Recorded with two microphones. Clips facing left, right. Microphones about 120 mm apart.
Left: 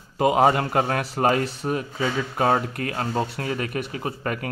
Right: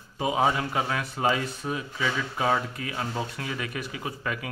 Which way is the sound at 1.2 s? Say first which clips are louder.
Left 5 dB; 65° left (ahead or behind).